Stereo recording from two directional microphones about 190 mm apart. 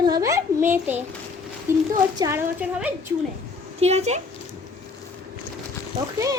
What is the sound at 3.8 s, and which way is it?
Speech, 35° right (ahead or behind).